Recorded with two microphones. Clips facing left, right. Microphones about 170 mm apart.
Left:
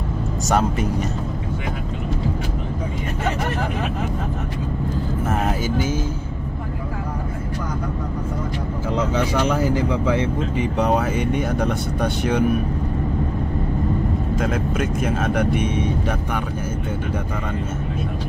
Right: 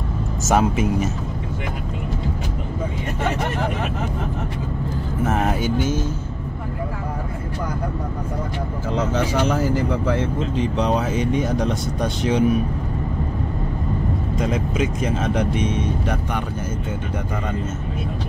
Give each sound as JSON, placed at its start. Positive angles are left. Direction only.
{"t": 0.5, "sound": "speech", "side_deg": -5}
{"t": 5.6, "sound": "speech", "side_deg": 10}
{"t": 9.6, "sound": "speech", "side_deg": 15}
{"t": 10.5, "sound": "speech", "side_deg": 60}
{"t": 11.4, "sound": "speech", "side_deg": 10}
{"t": 12.0, "sound": "speech", "side_deg": 60}
{"t": 15.0, "sound": "speech", "side_deg": 5}